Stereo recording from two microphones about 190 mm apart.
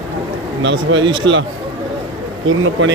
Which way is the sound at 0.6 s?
80° right.